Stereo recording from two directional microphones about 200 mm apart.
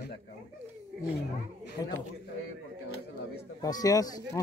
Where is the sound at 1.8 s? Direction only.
15° left (ahead or behind).